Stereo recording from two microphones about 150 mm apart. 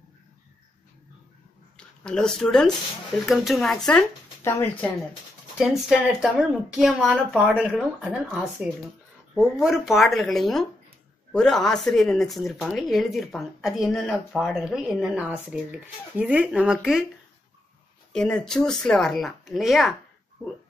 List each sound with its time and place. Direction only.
1.8 s speech: 5° left (ahead or behind)
4.4 s speech: 15° left (ahead or behind)
5.6 s speech: 5° right (ahead or behind)
18.1 s speech: 5° left (ahead or behind)
20.4 s speech: 15° left (ahead or behind)